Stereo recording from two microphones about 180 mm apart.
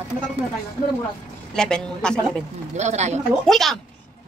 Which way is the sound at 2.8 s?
40° right (ahead or behind).